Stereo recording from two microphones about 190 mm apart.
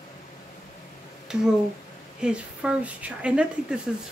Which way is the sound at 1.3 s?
5° right (ahead or behind).